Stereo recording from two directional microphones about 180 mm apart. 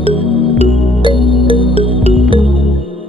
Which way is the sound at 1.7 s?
30° right (ahead or behind).